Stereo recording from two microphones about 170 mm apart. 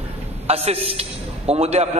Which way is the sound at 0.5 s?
40° right (ahead or behind).